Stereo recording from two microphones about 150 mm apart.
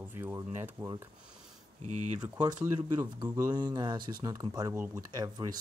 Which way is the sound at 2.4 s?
25° right (ahead or behind).